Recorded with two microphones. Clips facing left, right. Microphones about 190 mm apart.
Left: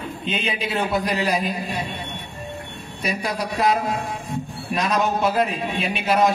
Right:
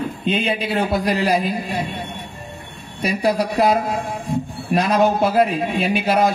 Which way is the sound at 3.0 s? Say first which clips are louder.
Right 7 dB; 35° right (ahead or behind).